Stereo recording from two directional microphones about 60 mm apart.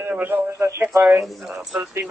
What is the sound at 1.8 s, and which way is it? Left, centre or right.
Speech, right.